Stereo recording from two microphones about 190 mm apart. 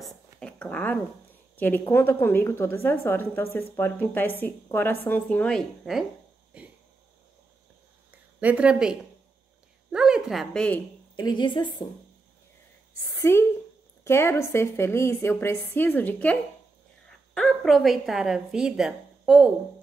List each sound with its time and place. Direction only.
0.0 s a woman's voice: 5° left (ahead or behind)
6.5 s a sound: 5° right (ahead or behind)
8.4 s speech: 5° right (ahead or behind)
11.1 s a woman's voice: 25° left (ahead or behind)
13.2 s a woman's voice: 15° left (ahead or behind); by 19.5 s 5° right (ahead or behind)